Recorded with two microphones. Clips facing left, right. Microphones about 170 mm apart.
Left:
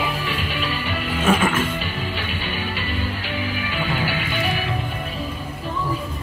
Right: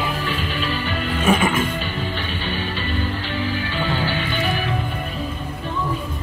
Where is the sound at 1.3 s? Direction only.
10° right (ahead or behind).